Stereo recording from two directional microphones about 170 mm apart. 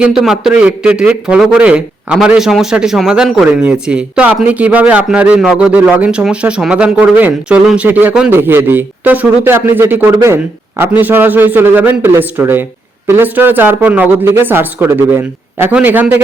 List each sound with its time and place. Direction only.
0.0 s a man's voice: centre (ahead or behind)